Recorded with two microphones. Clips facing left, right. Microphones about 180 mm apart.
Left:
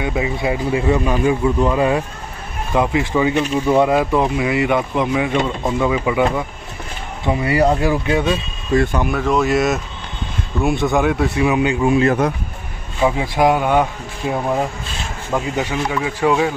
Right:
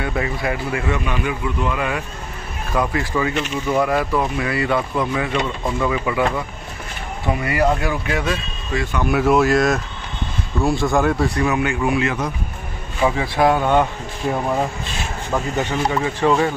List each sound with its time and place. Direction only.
0.0 s speech: 10° left (ahead or behind)
0.4 s a man's voice: 20° left (ahead or behind)
3.4 s a man's voice: 30° left (ahead or behind)
9.1 s speech: 5° right (ahead or behind)
10.8 s speech: centre (ahead or behind)
11.4 s a man's voice: 20° left (ahead or behind)
13.0 s speech: 15° left (ahead or behind)